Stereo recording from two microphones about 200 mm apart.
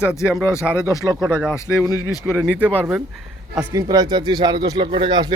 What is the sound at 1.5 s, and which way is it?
Speech, 15° left (ahead or behind).